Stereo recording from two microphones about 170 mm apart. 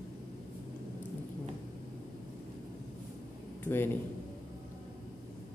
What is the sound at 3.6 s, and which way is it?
Speech, 15° left (ahead or behind).